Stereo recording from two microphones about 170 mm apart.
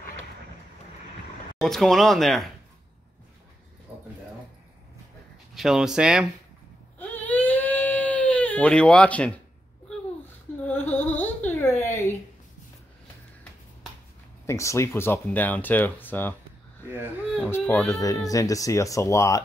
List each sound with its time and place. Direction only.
1.6 s speech: centre (ahead or behind)
5.5 s speech: centre (ahead or behind)
7.0 s baby cry: 10° left (ahead or behind)
10.7 s a sound: 10° left (ahead or behind)
14.4 s speech: 15° left (ahead or behind)
17.4 s speech: 10° left (ahead or behind)
18.0 s speech: 20° left (ahead or behind)